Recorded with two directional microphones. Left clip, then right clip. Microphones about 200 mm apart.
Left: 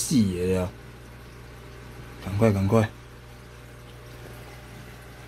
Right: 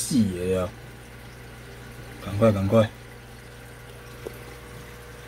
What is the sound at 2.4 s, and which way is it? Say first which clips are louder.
Speech: right 3 dB; 25° left (ahead or behind).